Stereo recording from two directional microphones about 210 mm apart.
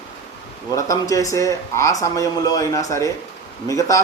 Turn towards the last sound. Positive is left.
turn(degrees=15)  # may be behind; listen again after turning